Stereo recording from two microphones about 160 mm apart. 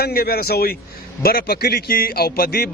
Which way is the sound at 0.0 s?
70° left (ahead or behind).